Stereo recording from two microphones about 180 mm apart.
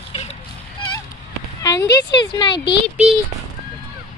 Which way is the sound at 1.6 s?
20° left (ahead or behind).